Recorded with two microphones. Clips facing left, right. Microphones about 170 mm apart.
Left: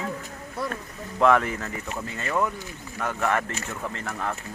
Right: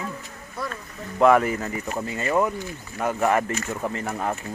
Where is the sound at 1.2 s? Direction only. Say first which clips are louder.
Right 3 dB; 5° right (ahead or behind).